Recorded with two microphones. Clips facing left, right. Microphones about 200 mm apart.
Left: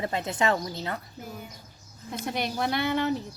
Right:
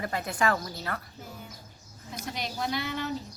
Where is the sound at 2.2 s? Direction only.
60° left (ahead or behind).